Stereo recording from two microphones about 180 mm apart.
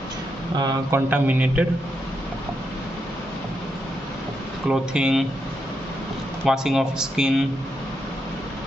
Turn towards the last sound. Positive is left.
turn(degrees=-5)  # may be behind; listen again after turning